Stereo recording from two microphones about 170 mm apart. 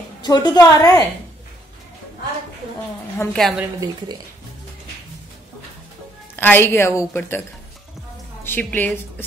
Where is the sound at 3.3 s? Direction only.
Centre (ahead or behind).